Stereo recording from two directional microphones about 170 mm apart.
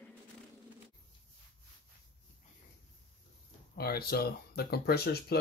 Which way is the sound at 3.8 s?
65° left (ahead or behind).